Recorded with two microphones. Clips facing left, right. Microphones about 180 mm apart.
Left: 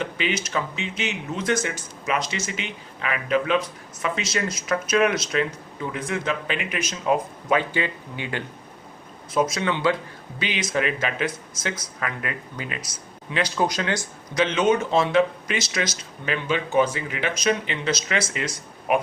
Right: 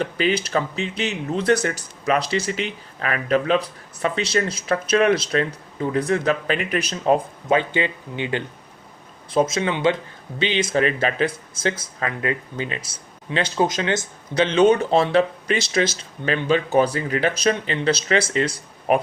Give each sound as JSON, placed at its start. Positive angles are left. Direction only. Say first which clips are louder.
{"t": 0.0, "sound": "speech", "louder": "right 5 dB", "side_deg": -35}